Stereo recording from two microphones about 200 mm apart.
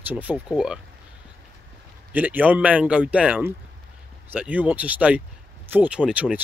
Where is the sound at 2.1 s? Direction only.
10° right (ahead or behind).